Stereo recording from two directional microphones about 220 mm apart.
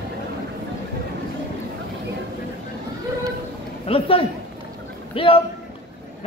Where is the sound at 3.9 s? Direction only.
25° left (ahead or behind).